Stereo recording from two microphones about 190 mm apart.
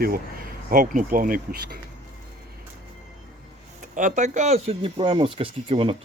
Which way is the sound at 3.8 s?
40° right (ahead or behind).